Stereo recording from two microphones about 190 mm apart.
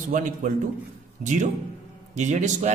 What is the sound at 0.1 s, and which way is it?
A man's voice, 45° right (ahead or behind).